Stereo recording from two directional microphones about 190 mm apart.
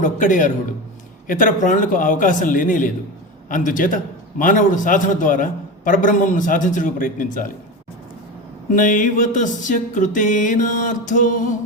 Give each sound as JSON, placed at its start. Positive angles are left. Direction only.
{"t": 0.0, "sound": "a man's voice", "side_deg": 45}
{"t": 8.7, "sound": "a man's voice", "side_deg": 45}